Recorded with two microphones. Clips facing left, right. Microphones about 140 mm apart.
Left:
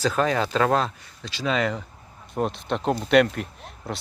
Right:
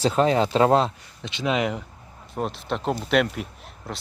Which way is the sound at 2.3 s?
Centre (ahead or behind).